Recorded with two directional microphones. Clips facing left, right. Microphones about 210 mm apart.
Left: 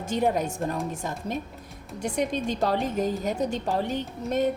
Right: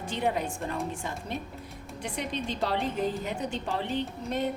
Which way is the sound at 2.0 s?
45° left (ahead or behind).